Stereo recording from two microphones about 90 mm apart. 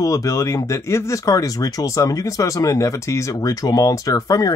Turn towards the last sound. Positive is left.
turn(degrees=40)  # may be behind; listen again after turning